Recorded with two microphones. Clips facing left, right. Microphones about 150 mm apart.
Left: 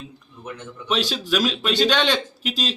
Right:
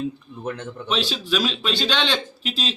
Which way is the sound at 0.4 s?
55° right (ahead or behind).